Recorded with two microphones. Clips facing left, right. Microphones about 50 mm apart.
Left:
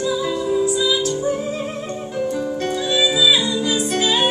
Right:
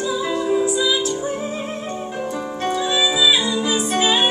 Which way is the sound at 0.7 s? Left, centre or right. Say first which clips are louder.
Even; centre.